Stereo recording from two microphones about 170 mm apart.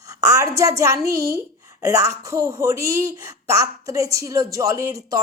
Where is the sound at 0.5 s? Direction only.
20° right (ahead or behind).